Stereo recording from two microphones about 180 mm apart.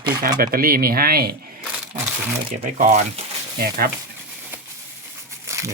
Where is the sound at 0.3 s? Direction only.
55° right (ahead or behind).